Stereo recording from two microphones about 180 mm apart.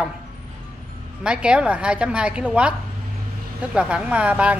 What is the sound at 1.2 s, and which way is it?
A woman's voice, 5° right (ahead or behind).